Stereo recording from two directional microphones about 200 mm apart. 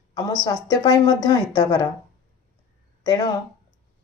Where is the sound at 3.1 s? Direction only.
20° left (ahead or behind).